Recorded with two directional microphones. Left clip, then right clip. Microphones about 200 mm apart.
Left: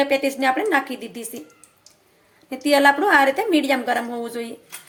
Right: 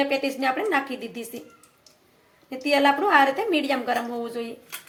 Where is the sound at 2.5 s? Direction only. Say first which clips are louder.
Left 4 dB; 20° left (ahead or behind).